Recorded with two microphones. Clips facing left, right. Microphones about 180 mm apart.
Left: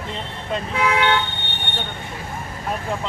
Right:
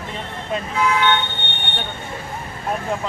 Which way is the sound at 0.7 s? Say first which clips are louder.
Right 1 dB; 65° left (ahead or behind).